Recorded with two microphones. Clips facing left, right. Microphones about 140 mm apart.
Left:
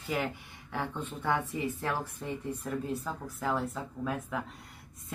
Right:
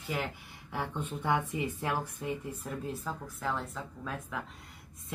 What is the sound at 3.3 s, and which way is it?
A man's voice, 5° left (ahead or behind).